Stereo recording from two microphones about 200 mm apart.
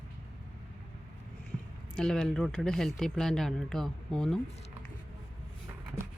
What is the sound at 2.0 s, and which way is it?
Speech, 5° left (ahead or behind).